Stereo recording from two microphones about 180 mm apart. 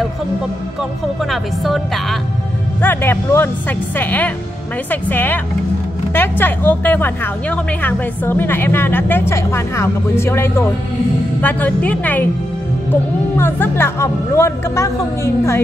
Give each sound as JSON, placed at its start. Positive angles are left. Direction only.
{"t": 1.3, "sound": "speech", "side_deg": 0}
{"t": 2.8, "sound": "a woman's voice", "side_deg": 10}
{"t": 13.4, "sound": "a woman's voice", "side_deg": 10}